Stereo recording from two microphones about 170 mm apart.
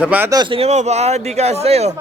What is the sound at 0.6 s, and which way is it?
Speech, 40° right (ahead or behind).